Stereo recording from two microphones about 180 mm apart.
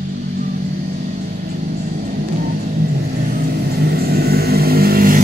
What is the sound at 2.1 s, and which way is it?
Vehicle, 50° right (ahead or behind).